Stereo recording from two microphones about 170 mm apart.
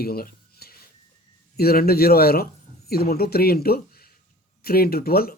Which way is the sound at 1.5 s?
65° left (ahead or behind).